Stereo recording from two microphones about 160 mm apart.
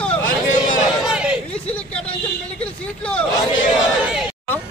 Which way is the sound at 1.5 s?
5° left (ahead or behind).